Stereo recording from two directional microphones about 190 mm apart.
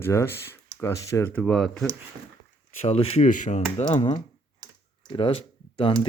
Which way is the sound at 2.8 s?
35° left (ahead or behind).